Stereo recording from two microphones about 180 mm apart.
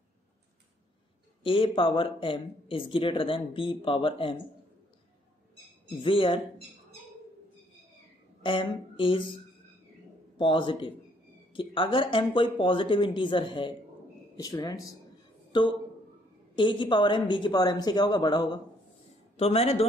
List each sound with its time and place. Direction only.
1.4 s speech: 30° left (ahead or behind)
5.9 s speech: 30° left (ahead or behind)
8.4 s speech: 30° left (ahead or behind)
10.3 s speech: 25° left (ahead or behind)
16.5 s speech: 25° left (ahead or behind)
19.3 s a man's voice: 35° left (ahead or behind)